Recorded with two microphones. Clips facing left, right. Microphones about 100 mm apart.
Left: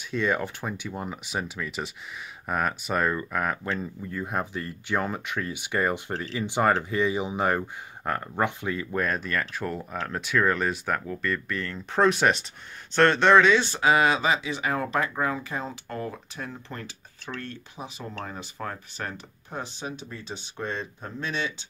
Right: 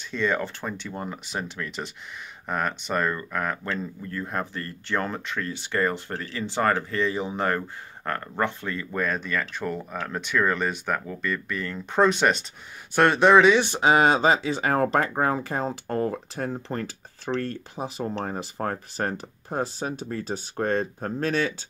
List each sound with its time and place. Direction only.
0.1 s speech: 5° left (ahead or behind)
12.9 s speech: 15° right (ahead or behind); by 21.5 s 45° right (ahead or behind)